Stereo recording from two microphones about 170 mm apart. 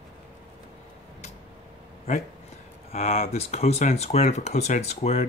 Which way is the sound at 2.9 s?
40° left (ahead or behind).